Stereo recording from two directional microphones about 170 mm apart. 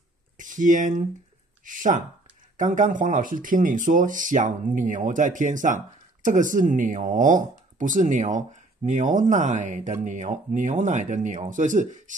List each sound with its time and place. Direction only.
0.4 s speech: 50° right (ahead or behind)